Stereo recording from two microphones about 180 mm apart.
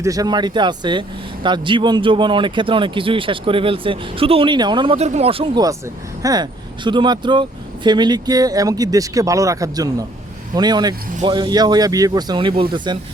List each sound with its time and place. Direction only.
0.0 s speech: 20° right (ahead or behind)